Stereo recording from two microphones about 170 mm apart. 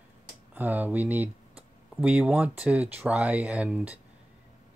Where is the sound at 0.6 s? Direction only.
10° right (ahead or behind).